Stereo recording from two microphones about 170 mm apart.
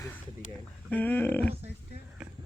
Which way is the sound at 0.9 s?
10° left (ahead or behind).